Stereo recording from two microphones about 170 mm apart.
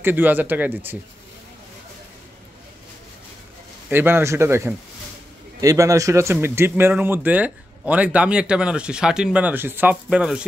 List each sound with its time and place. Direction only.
0.0 s speech: 10° right (ahead or behind)
3.9 s speech: 15° right (ahead or behind)